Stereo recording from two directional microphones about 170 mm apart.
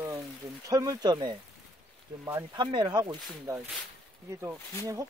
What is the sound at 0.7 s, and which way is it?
Speech, 20° right (ahead or behind).